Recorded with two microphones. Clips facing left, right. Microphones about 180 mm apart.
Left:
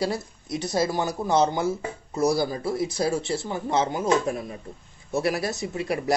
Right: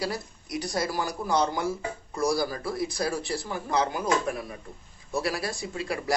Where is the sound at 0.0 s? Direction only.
25° left (ahead or behind).